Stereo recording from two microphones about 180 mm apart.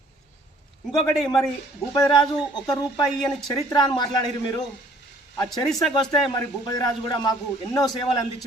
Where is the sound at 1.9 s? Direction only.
25° left (ahead or behind).